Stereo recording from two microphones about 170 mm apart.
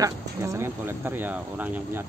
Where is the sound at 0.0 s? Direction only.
15° right (ahead or behind).